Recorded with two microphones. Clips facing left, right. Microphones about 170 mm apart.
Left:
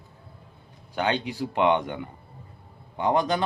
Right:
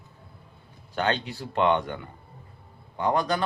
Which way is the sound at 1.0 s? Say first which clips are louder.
Left 1 dB; 15° left (ahead or behind).